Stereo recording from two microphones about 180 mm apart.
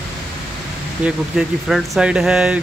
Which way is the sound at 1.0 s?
Centre (ahead or behind).